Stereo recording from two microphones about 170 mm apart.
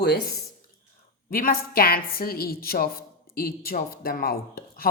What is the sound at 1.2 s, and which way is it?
A woman's voice, 60° left (ahead or behind).